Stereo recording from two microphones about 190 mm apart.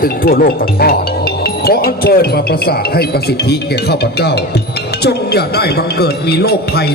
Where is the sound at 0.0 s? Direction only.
50° left (ahead or behind).